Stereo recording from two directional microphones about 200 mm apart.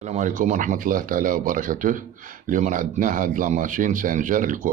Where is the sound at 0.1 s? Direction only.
40° right (ahead or behind).